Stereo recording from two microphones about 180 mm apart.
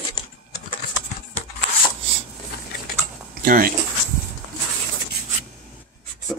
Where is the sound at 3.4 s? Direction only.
50° right (ahead or behind).